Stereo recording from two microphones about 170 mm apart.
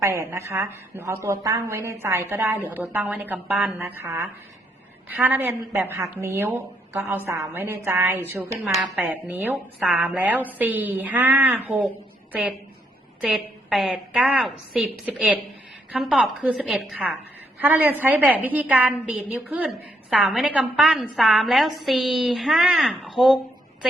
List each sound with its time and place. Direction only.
0.0 s a woman's voice: 15° right (ahead or behind)